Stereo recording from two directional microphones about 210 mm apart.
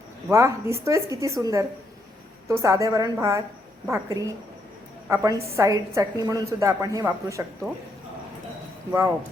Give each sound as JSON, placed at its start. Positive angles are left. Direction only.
{"t": 0.3, "sound": "a woman's voice", "side_deg": -15}